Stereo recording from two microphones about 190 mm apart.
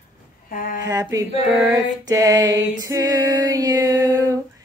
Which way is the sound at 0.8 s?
15° right (ahead or behind).